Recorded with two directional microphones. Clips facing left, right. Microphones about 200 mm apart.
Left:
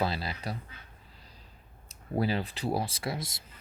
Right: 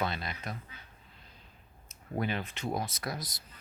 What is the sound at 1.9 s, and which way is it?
Speech, 35° left (ahead or behind).